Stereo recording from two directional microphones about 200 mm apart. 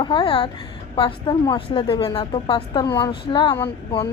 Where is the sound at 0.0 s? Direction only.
25° left (ahead or behind).